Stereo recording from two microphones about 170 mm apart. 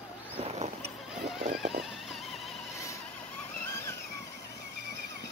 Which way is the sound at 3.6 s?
15° left (ahead or behind).